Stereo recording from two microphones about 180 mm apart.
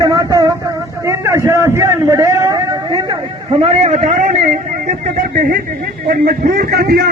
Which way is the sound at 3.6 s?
35° right (ahead or behind).